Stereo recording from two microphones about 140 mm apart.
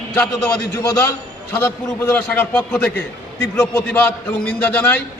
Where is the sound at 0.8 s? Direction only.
20° left (ahead or behind).